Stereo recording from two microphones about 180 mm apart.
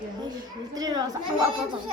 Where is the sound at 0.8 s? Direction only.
20° right (ahead or behind).